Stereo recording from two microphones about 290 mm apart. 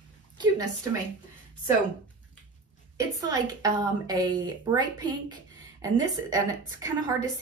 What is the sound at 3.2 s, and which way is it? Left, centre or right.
Speech, centre.